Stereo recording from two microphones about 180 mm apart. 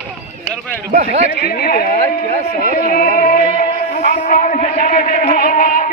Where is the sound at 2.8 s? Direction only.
55° left (ahead or behind).